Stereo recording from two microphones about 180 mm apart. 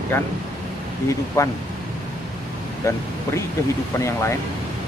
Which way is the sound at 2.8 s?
15° left (ahead or behind).